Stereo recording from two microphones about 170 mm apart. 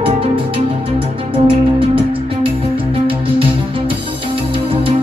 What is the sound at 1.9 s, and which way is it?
Music, 30° right (ahead or behind).